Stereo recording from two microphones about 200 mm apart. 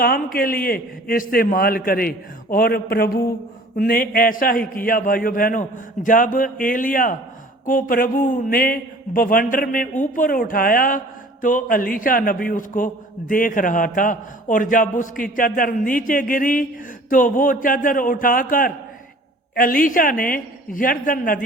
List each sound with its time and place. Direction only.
0.0 s a man's voice: 45° left (ahead or behind)